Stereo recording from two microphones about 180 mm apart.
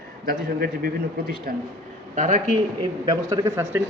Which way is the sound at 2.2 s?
40° right (ahead or behind).